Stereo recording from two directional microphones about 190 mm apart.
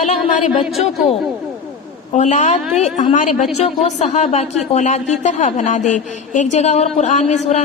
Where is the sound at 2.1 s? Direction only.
40° left (ahead or behind).